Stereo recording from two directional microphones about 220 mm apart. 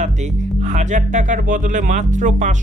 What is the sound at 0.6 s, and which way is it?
Speech, 35° right (ahead or behind).